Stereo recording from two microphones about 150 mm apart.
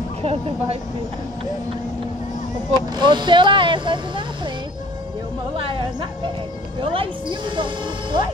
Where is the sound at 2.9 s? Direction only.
30° right (ahead or behind).